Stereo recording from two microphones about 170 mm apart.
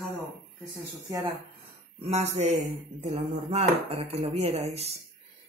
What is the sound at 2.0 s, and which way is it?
Speech, 40° right (ahead or behind).